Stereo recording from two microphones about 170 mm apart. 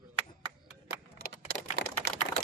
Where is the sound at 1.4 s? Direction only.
70° right (ahead or behind).